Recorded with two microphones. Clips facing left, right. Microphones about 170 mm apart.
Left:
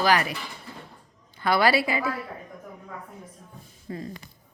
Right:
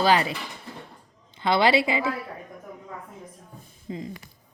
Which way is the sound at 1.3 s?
25° right (ahead or behind).